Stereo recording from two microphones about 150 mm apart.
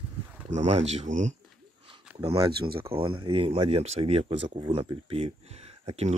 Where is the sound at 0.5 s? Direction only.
50° right (ahead or behind).